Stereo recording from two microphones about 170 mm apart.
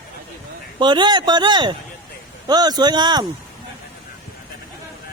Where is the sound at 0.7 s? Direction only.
25° right (ahead or behind).